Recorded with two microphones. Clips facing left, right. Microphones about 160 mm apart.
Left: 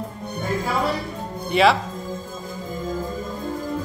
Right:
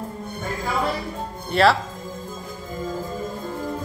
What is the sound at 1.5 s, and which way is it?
Speech, 15° left (ahead or behind).